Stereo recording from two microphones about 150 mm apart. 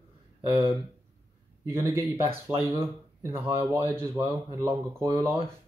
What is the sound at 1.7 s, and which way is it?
Speech, 20° right (ahead or behind).